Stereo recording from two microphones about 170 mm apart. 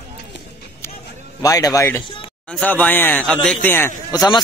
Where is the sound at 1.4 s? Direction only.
20° left (ahead or behind).